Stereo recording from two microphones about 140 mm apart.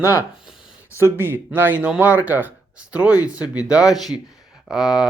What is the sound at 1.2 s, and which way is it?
Speech, 15° right (ahead or behind).